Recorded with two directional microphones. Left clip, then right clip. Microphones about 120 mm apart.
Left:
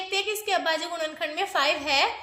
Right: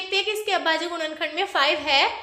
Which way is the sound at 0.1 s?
35° left (ahead or behind).